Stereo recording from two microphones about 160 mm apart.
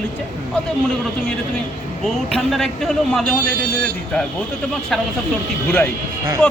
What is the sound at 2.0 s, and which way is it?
Speech, centre (ahead or behind).